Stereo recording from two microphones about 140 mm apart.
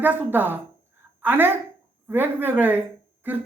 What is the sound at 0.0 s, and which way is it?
Speech, 15° right (ahead or behind).